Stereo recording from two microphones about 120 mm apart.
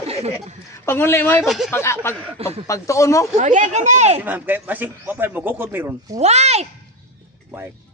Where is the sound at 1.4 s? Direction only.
Centre (ahead or behind).